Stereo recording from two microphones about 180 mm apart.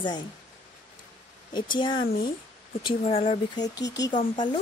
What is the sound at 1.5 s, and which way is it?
Speech, 25° left (ahead or behind).